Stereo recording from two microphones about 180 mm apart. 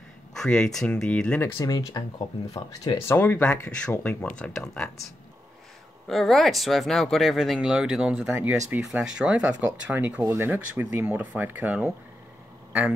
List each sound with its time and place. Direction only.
0.4 s speech: 5° left (ahead or behind)
1.6 s speech: 20° left (ahead or behind)
6.0 s speech: centre (ahead or behind)